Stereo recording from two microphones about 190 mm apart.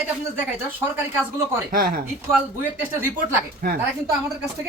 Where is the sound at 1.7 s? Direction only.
50° right (ahead or behind).